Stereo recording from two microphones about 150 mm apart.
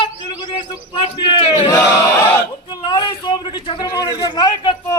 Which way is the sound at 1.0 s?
40° left (ahead or behind).